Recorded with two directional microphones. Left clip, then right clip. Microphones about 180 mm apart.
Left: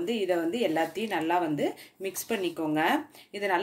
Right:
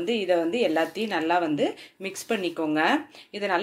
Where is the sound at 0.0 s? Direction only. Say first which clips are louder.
Right 4 dB; 20° right (ahead or behind).